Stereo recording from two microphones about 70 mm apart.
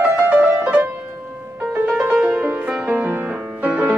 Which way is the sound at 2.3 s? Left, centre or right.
Right.